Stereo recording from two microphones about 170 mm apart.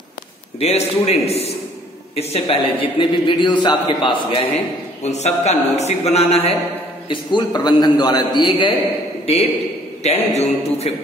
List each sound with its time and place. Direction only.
0.6 s a man's voice: 40° left (ahead or behind)
7.1 s a man's voice: 30° left (ahead or behind)